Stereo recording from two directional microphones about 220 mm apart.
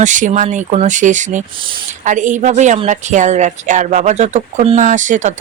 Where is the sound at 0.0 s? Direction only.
35° right (ahead or behind).